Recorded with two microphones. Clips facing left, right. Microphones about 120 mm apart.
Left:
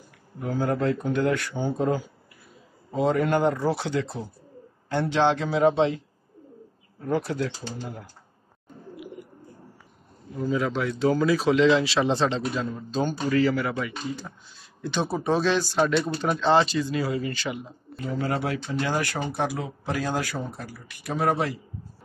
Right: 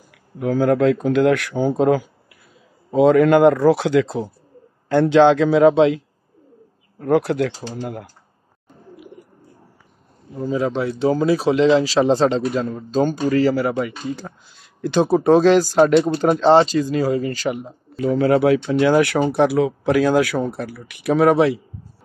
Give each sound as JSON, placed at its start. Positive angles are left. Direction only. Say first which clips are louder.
{"t": 0.4, "sound": "speech", "louder": "right 9 dB", "side_deg": -90}
{"t": 3.0, "sound": "speech", "louder": "right 10 dB", "side_deg": -90}
{"t": 7.0, "sound": "speech", "louder": "right 9 dB", "side_deg": -75}
{"t": 10.4, "sound": "speech", "louder": "right 5 dB", "side_deg": -30}
{"t": 16.3, "sound": "speech", "louder": "right 7 dB", "side_deg": -35}
{"t": 17.9, "sound": "speech", "louder": "right 11 dB", "side_deg": -75}